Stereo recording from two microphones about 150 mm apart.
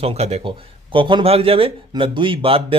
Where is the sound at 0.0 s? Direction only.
45° right (ahead or behind).